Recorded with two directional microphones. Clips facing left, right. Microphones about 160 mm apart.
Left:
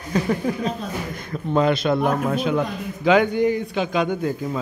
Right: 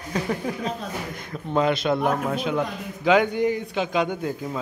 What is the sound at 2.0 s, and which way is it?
Speech, centre (ahead or behind).